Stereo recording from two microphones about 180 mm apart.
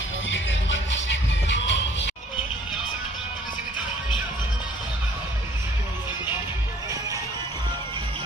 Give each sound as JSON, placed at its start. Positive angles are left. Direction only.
{"t": 0.3, "sound": "music", "side_deg": 90}